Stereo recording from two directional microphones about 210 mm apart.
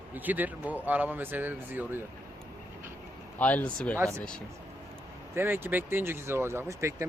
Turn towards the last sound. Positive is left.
turn(degrees=-15)  # may be behind; listen again after turning